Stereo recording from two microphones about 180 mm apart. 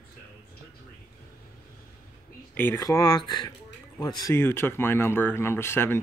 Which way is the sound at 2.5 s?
10° left (ahead or behind).